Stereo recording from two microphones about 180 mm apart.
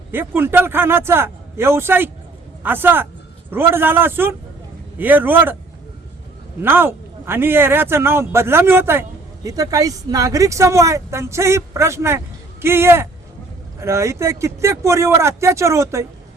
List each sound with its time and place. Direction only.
0.1 s a man's voice: 10° right (ahead or behind)
6.6 s a man's voice: 10° right (ahead or behind)